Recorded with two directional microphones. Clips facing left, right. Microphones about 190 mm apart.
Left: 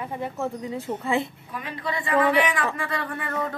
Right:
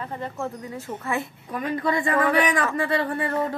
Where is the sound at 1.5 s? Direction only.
45° right (ahead or behind).